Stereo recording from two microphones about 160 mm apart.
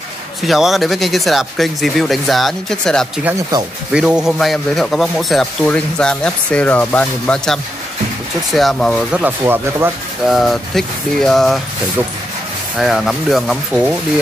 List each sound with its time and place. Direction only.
0.4 s a man's voice: centre (ahead or behind)
9.4 s speech: 15° right (ahead or behind)
10.2 s a man's voice: centre (ahead or behind)
12.7 s a man's voice: centre (ahead or behind)